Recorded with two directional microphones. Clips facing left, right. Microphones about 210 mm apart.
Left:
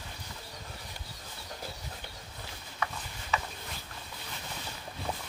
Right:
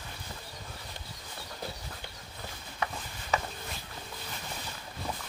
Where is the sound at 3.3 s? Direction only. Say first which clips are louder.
Right 2 dB; 40° right (ahead or behind).